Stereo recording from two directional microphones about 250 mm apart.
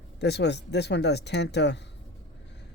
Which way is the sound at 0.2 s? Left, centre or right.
Left.